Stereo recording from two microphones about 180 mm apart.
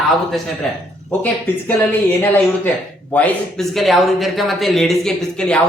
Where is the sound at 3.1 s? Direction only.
5° left (ahead or behind).